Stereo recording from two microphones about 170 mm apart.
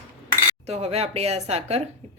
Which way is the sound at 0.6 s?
40° right (ahead or behind).